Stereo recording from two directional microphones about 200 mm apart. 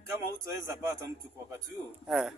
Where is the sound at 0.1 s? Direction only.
15° right (ahead or behind).